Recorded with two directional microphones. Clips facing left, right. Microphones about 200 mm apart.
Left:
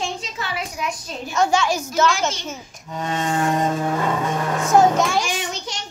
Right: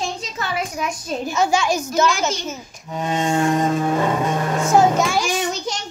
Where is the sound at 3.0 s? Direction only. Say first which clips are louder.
Right 3 dB; 20° right (ahead or behind).